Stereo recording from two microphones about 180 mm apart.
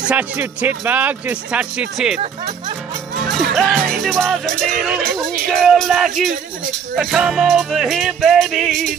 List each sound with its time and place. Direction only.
0.1 s speech: 10° right (ahead or behind)
3.5 s music: centre (ahead or behind)